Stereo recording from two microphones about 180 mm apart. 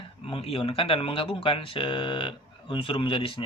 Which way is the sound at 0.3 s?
30° left (ahead or behind).